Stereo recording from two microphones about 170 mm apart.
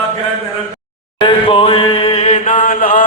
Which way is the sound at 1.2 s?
30° left (ahead or behind).